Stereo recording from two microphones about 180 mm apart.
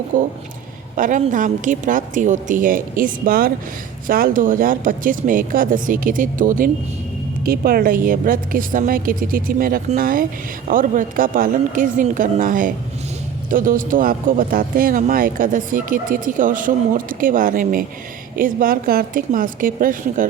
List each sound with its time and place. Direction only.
0.1 s speech: 45° right (ahead or behind)